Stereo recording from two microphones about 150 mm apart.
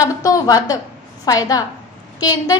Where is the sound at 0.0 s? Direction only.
25° left (ahead or behind).